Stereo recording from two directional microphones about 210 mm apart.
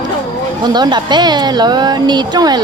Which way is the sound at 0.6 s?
20° right (ahead or behind).